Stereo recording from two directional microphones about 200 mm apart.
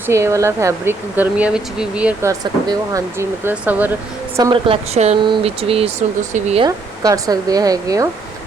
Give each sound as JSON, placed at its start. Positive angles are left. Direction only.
{"t": 0.1, "sound": "speech", "side_deg": -15}
{"t": 2.4, "sound": "speech", "side_deg": -20}
{"t": 4.4, "sound": "speech", "side_deg": -20}
{"t": 6.7, "sound": "speech", "side_deg": -20}